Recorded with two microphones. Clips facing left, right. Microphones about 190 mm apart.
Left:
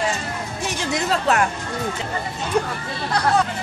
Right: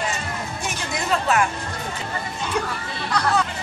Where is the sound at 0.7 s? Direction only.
75° left (ahead or behind).